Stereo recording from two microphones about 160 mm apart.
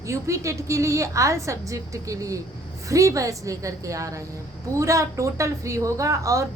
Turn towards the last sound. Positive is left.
turn(degrees=-20)  # may be behind; listen again after turning